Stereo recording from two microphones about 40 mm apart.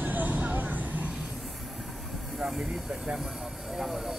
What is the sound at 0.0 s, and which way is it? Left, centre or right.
Vehicle, right.